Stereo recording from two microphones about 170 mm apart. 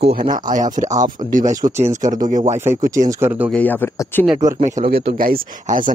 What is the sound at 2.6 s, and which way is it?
Speech, 15° right (ahead or behind).